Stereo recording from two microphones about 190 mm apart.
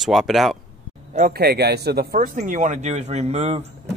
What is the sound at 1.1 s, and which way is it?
Speech, 45° right (ahead or behind).